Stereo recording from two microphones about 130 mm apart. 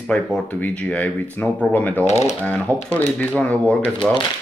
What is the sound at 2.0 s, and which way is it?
Speech, 55° left (ahead or behind).